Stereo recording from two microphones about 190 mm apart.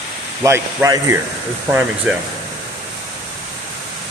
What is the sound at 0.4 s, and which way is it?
Speech, 15° right (ahead or behind).